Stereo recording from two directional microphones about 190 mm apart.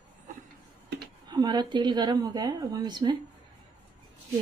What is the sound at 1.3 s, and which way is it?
A woman's voice, 20° right (ahead or behind).